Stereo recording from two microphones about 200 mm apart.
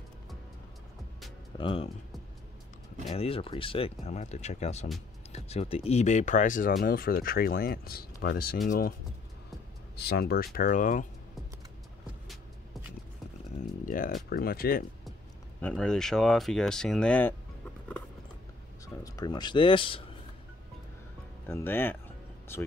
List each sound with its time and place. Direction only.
1.6 s speech: 25° left (ahead or behind)
3.1 s speech: 30° left (ahead or behind); by 8.9 s 45° left (ahead or behind)
9.9 s speech: 50° left (ahead or behind)
13.8 s speech: 45° left (ahead or behind)
15.6 s speech: 5° left (ahead or behind)
19.0 s speech: 20° left (ahead or behind)
21.5 s music: 10° left (ahead or behind)